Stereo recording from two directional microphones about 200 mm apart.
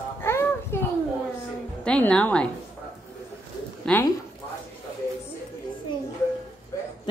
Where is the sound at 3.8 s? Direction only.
10° left (ahead or behind).